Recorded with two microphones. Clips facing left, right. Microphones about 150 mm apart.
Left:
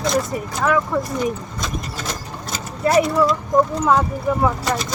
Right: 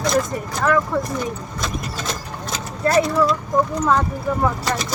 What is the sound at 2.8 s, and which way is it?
Speech, 10° left (ahead or behind).